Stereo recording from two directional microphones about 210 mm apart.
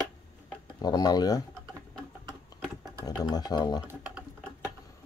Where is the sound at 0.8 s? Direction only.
20° left (ahead or behind).